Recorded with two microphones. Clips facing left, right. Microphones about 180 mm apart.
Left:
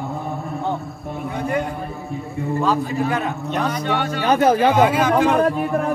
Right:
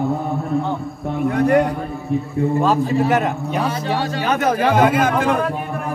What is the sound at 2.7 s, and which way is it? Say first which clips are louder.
Speech: right 4 dB; 25° right (ahead or behind).